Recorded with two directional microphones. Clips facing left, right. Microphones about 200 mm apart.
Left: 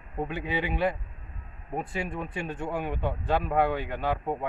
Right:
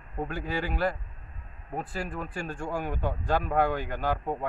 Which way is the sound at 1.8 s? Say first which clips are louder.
Left 2 dB; 5° right (ahead or behind).